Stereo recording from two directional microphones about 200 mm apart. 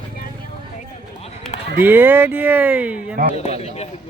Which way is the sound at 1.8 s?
10° right (ahead or behind).